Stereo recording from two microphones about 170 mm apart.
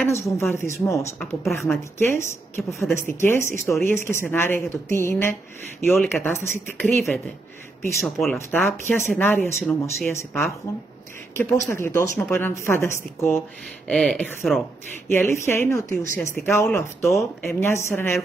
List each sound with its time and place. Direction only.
0.0 s a woman's voice: 15° left (ahead or behind)
1.2 s a woman's voice: centre (ahead or behind)
2.0 s a woman's voice: 15° left (ahead or behind)
5.9 s a woman's voice: centre (ahead or behind)
8.4 s a woman's voice: 15° left (ahead or behind)
13.8 s a woman's voice: 5° left (ahead or behind)
15.0 s a woman's voice: 15° left (ahead or behind)